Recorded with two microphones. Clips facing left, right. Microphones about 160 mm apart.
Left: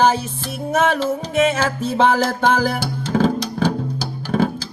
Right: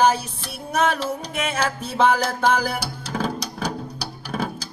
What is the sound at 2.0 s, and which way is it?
Music, 30° left (ahead or behind).